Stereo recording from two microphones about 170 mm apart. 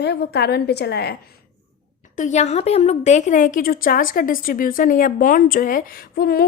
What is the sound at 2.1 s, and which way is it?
A woman's voice, 45° left (ahead or behind).